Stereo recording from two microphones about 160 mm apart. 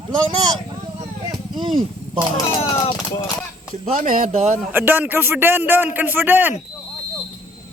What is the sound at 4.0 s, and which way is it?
Speech, 55° right (ahead or behind).